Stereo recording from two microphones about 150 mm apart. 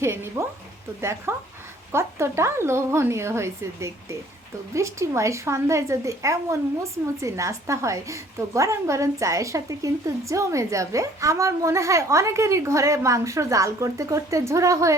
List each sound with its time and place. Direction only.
0.0 s a woman's voice: 15° right (ahead or behind)